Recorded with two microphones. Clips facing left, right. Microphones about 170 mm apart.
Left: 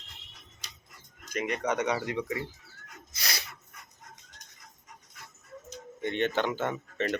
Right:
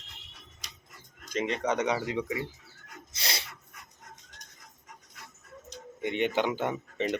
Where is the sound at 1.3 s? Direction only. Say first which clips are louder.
Right 1 dB; 25° right (ahead or behind).